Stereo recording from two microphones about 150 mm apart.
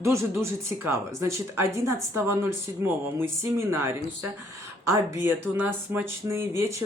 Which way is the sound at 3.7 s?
20° right (ahead or behind).